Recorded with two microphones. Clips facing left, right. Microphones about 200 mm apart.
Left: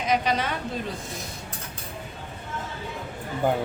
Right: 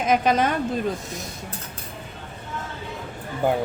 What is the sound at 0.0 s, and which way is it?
Speech, 50° right (ahead or behind).